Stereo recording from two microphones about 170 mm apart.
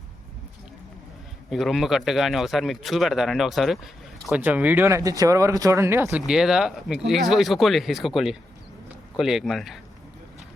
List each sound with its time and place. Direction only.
1.5 s a man's voice: centre (ahead or behind); by 6.1 s 15° right (ahead or behind)
6.1 s a man's voice: 5° right (ahead or behind)